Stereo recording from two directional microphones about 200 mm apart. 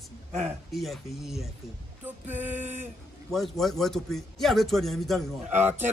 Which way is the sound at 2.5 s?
35° right (ahead or behind).